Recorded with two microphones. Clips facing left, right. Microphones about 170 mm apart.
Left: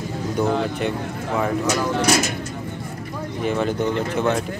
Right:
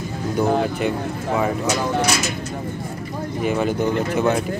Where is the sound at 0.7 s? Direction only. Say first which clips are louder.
Right 2 dB; 5° right (ahead or behind).